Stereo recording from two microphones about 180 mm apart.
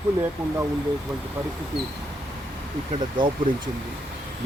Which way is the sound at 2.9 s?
25° right (ahead or behind).